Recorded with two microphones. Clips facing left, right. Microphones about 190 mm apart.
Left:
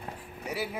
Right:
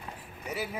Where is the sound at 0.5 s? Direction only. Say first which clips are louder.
Left 1 dB; 10° left (ahead or behind).